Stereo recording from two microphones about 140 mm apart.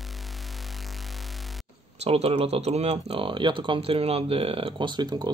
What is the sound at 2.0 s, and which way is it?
Speech, 45° right (ahead or behind).